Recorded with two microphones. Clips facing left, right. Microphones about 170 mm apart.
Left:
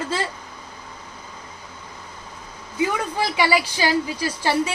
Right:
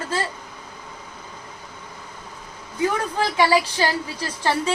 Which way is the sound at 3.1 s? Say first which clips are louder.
Right 1 dB; 10° left (ahead or behind).